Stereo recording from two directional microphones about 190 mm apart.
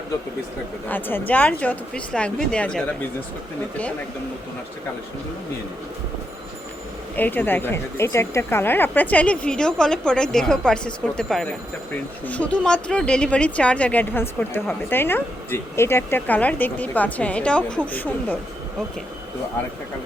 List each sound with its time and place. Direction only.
0.9 s speech: 10° left (ahead or behind)
7.2 s speech: 10° left (ahead or behind)